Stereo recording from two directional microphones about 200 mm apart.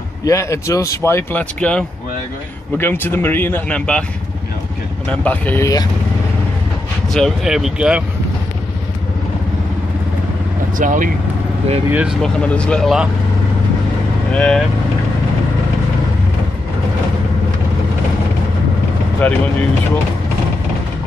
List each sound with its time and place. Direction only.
0.2 s speech: 15° left (ahead or behind)
5.2 s speech: 5° left (ahead or behind)
7.1 s speech: centre (ahead or behind)
10.8 s speech: 40° right (ahead or behind)
11.9 s speech: 5° right (ahead or behind)
14.3 s speech: 5° left (ahead or behind)
19.2 s speech: 10° left (ahead or behind)